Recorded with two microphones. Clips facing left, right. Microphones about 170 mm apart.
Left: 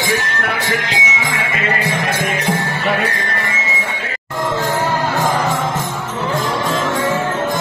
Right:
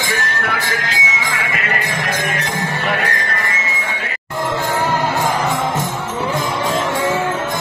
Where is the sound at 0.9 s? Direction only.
25° left (ahead or behind).